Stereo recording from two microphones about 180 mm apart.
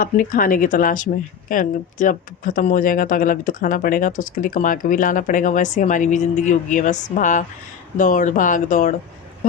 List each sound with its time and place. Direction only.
0.0 s a woman's voice: 50° left (ahead or behind)
9.4 s dog: 50° left (ahead or behind)